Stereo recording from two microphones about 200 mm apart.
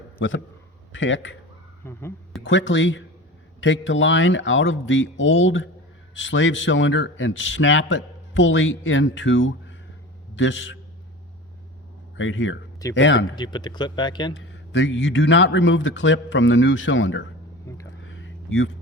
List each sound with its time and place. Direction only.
0.2 s a man's voice: 70° left (ahead or behind)
1.8 s speech: 10° left (ahead or behind)
2.4 s a man's voice: 65° left (ahead or behind)
12.1 s a man's voice: 70° left (ahead or behind)
13.3 s speech: 20° left (ahead or behind)
14.3 s a man's voice: 60° left (ahead or behind)
18.0 s a sound: 75° left (ahead or behind)